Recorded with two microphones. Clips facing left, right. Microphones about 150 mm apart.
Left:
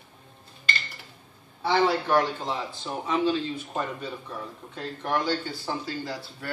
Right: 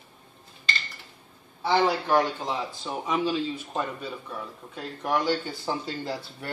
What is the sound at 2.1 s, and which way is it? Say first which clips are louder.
A man's voice: even; 20° right (ahead or behind).